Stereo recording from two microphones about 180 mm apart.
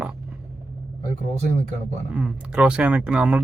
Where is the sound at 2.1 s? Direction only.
5° right (ahead or behind).